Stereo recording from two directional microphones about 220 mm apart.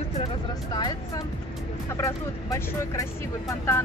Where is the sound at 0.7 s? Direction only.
20° left (ahead or behind).